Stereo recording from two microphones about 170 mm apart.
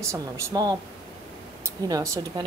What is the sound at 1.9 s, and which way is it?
Speech, 20° right (ahead or behind).